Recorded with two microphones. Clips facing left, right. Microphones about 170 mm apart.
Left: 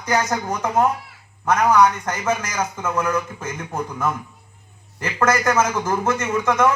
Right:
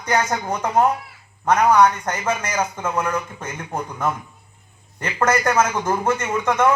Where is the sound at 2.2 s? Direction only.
30° right (ahead or behind).